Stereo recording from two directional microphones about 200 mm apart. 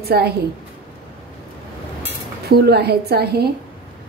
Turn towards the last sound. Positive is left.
turn(degrees=-50)  # may be behind; listen again after turning